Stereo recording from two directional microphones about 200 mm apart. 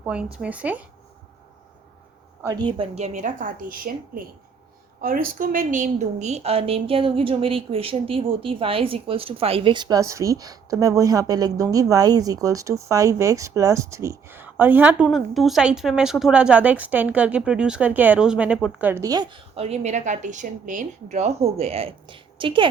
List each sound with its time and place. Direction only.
0.0 s a woman's voice: 5° right (ahead or behind)
2.4 s a woman's voice: 20° right (ahead or behind)